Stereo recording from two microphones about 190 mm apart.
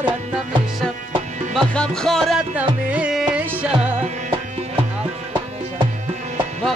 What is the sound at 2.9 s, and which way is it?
Music, 5° right (ahead or behind).